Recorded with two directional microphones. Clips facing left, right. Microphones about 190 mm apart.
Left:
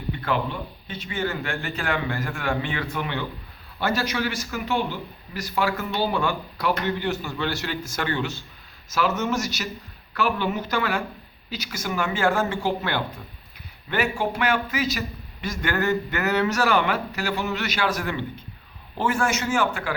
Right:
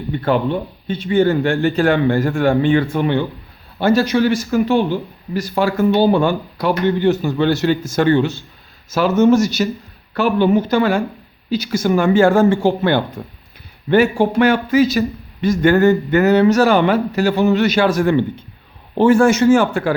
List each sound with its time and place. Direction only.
0.2 s a man's voice: 30° right (ahead or behind)